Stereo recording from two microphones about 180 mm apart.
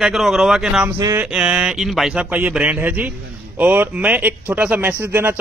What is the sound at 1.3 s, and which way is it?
A man's voice, 5° right (ahead or behind).